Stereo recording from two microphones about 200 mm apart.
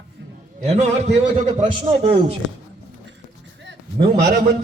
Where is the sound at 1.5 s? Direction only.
35° right (ahead or behind).